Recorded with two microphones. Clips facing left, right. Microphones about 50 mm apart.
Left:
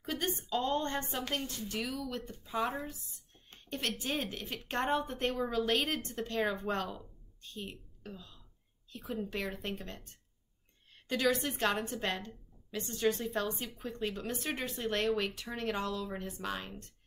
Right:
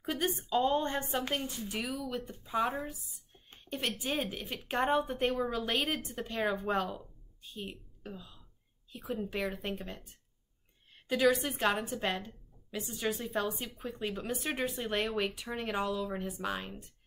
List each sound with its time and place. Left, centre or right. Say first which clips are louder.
0.0 s a woman's voice: right 2 dB; centre
2.7 s a sound: right 2 dB; centre
3.7 s a woman's voice: right 1 dB; centre